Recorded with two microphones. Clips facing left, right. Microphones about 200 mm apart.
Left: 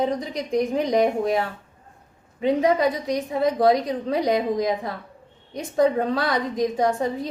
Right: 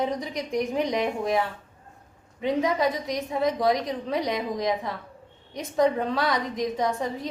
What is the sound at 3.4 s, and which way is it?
Speech, 30° left (ahead or behind).